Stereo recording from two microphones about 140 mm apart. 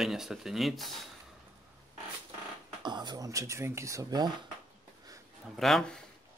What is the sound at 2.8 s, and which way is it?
Speech, 30° right (ahead or behind).